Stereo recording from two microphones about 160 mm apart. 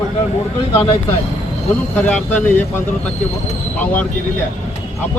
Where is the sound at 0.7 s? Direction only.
30° left (ahead or behind).